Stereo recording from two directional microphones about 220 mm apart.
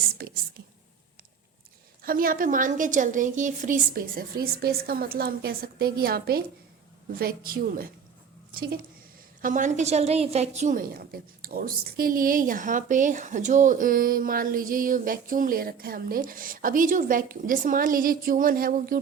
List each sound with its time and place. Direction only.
0.2 s whispering: 45° right (ahead or behind)
2.0 s a woman's voice: 40° right (ahead or behind)